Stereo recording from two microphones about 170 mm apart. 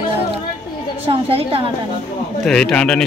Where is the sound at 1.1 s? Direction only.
35° right (ahead or behind).